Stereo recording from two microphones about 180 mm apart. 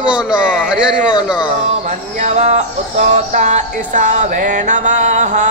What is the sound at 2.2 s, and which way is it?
Music, 40° right (ahead or behind).